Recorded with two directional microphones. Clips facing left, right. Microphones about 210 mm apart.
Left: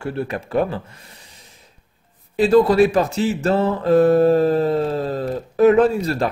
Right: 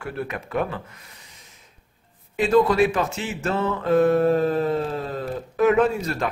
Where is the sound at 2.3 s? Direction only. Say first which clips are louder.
Left 5 dB; 35° left (ahead or behind).